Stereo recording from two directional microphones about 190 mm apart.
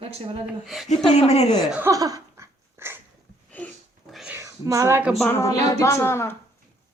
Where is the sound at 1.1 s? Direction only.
35° left (ahead or behind).